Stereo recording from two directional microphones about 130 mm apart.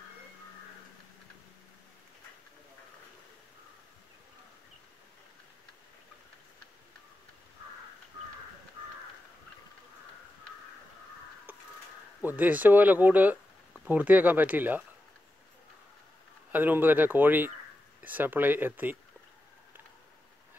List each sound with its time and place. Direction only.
11.5 s a sound: 15° right (ahead or behind)
12.2 s speech: 15° right (ahead or behind)
16.5 s speech: 15° right (ahead or behind)